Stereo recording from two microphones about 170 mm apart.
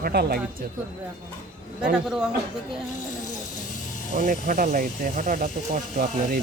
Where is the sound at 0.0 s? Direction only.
65° right (ahead or behind).